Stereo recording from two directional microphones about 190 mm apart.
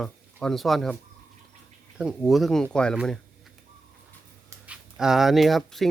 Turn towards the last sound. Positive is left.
turn(degrees=0)  # may be behind; listen again after turning